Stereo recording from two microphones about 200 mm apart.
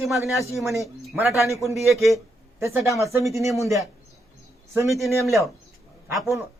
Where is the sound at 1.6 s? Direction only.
15° right (ahead or behind).